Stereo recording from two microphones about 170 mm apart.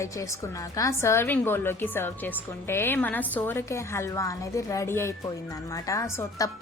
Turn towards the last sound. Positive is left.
turn(degrees=15)  # may be behind; listen again after turning